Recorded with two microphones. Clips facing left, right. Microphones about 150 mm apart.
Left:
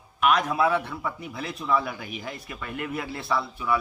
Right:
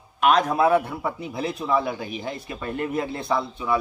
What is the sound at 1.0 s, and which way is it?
Speech, 30° right (ahead or behind).